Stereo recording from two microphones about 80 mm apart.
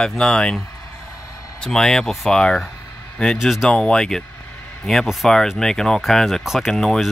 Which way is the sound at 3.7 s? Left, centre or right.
Centre.